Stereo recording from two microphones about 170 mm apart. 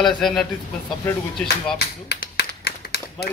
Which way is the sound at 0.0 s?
Centre (ahead or behind).